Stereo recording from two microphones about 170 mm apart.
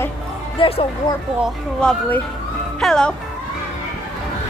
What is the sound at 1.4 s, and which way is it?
Speech, 5° left (ahead or behind).